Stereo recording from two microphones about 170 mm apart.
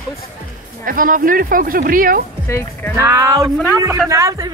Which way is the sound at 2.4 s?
15° left (ahead or behind).